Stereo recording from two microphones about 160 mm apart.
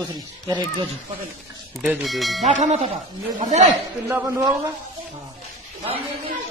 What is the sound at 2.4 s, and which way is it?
Speech, 45° right (ahead or behind).